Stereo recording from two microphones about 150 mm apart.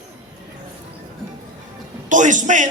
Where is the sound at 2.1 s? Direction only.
55° right (ahead or behind).